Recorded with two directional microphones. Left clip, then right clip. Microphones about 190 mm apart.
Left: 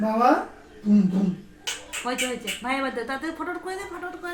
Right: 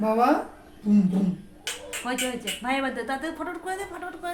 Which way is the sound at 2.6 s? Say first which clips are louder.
Even; 15° right (ahead or behind).